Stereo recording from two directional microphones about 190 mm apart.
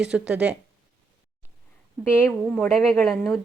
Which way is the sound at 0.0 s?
5° right (ahead or behind).